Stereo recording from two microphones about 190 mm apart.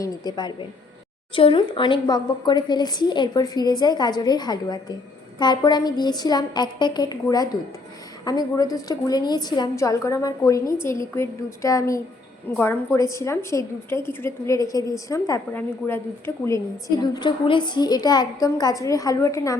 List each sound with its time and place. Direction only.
0.0 s a woman's voice: 20° left (ahead or behind)
17.0 s a woman's voice: 25° left (ahead or behind)